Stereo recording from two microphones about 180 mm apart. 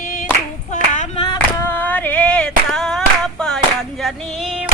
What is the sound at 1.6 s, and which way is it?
Female singing, 10° left (ahead or behind).